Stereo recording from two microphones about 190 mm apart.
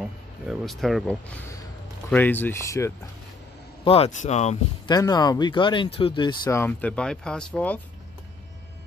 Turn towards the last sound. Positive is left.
turn(degrees=5)  # may be behind; listen again after turning